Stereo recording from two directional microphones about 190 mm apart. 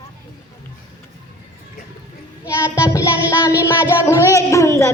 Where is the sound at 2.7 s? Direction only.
15° left (ahead or behind).